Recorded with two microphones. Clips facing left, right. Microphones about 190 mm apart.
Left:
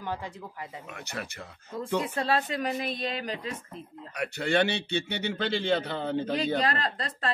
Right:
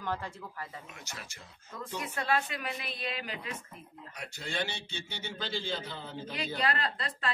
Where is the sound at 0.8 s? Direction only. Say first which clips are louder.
Left 9 dB; 60° left (ahead or behind).